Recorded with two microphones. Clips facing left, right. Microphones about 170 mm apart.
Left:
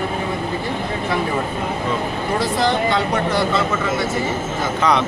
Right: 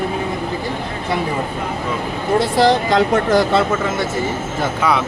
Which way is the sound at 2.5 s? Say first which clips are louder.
Right 5 dB; 35° right (ahead or behind).